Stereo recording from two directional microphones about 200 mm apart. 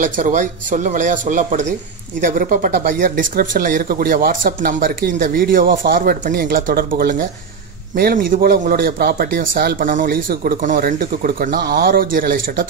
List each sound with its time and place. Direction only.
0.0 s speech: 40° right (ahead or behind)